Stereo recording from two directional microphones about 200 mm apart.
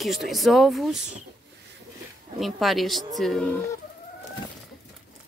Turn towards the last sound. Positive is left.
turn(degrees=5)  # may be behind; listen again after turning